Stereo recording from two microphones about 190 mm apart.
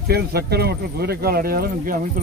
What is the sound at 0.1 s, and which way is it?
Speech, 55° right (ahead or behind).